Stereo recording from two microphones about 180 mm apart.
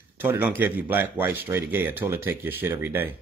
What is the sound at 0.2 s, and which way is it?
A man's voice, 10° right (ahead or behind).